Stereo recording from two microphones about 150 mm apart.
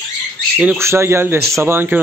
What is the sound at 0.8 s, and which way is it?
Speech, 15° right (ahead or behind).